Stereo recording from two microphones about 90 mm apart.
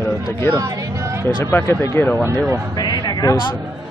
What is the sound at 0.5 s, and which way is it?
Speech, 35° right (ahead or behind).